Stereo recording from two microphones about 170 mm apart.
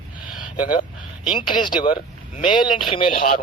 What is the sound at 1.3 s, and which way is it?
Speech, 30° left (ahead or behind).